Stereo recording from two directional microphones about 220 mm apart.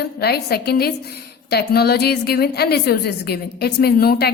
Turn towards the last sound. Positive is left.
turn(degrees=45)  # may be behind; listen again after turning